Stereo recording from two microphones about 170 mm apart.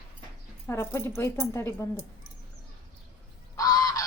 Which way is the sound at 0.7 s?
15° left (ahead or behind).